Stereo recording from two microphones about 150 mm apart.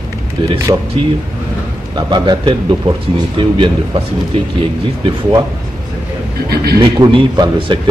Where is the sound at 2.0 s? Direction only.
30° right (ahead or behind).